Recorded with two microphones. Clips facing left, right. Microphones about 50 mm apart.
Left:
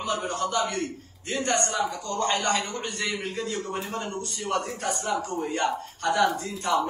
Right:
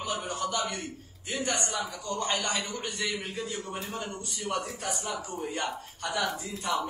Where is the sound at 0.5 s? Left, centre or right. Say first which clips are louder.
Left 5 dB; centre.